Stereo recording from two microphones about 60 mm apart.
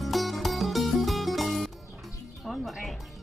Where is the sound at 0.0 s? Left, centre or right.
Centre.